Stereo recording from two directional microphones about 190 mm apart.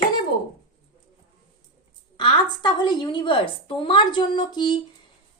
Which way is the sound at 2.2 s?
25° left (ahead or behind).